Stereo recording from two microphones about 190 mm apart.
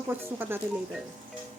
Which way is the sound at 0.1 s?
10° right (ahead or behind).